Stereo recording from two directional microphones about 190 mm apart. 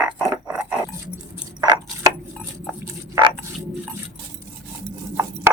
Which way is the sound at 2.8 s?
15° right (ahead or behind).